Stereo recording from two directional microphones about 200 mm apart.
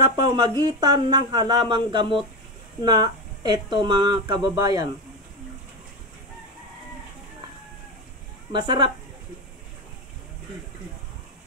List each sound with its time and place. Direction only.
0.1 s speech: 20° right (ahead or behind)
8.5 s speech: 20° right (ahead or behind)